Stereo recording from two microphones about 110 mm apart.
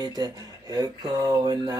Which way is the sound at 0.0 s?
35° right (ahead or behind).